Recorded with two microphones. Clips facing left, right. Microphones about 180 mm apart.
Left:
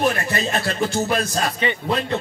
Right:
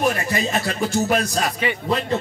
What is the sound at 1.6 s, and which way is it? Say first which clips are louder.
Speech: left 2 dB; 5° right (ahead or behind).